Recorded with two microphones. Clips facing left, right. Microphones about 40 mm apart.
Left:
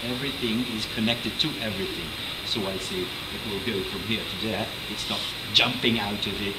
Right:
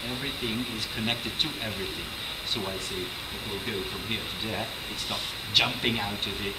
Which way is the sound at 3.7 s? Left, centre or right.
Centre.